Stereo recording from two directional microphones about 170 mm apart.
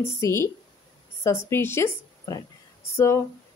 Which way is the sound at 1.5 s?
15° left (ahead or behind).